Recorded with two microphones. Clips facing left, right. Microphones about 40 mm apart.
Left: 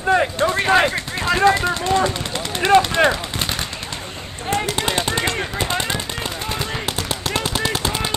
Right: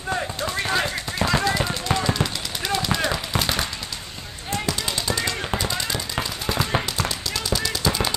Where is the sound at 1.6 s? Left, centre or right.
Left.